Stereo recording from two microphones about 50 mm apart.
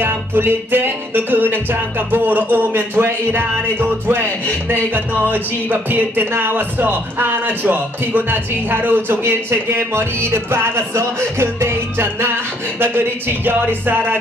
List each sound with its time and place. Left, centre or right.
0.0 s speech: right
13.5 s speech: right